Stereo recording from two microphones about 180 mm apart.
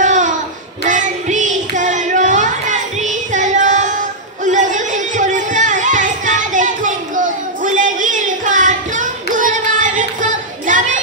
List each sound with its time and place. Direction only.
0.0 s a sound: 45° right (ahead or behind)
0.8 s child singing: 45° right (ahead or behind)
4.5 s music: 45° right (ahead or behind)